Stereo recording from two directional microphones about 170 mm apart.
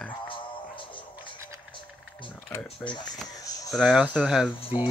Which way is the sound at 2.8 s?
25° left (ahead or behind).